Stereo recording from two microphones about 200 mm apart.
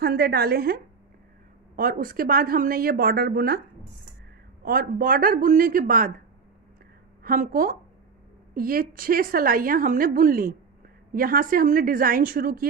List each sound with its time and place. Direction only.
0.0 s a woman's voice: 50° right (ahead or behind)
4.6 s a woman's voice: 45° right (ahead or behind)
7.2 s a woman's voice: 45° right (ahead or behind)